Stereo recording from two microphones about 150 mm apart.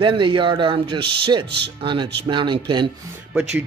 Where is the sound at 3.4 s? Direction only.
5° right (ahead or behind).